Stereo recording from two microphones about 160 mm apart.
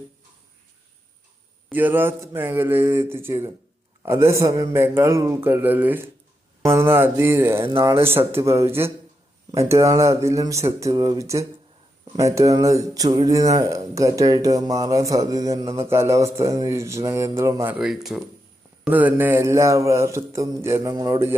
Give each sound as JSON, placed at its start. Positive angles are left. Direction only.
{"t": 1.7, "sound": "speech", "side_deg": -10}
{"t": 17.7, "sound": "speech", "side_deg": 0}